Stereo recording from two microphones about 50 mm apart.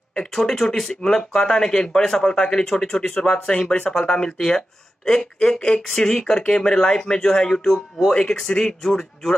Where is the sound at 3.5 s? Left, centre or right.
Left.